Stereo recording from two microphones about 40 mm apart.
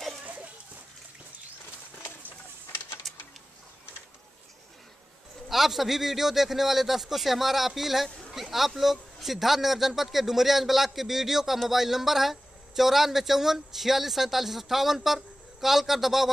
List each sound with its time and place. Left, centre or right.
0.2 s goat: right
5.5 s speech: centre